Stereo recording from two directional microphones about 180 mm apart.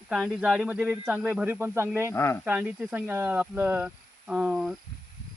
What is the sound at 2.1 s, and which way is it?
Speech, 15° left (ahead or behind).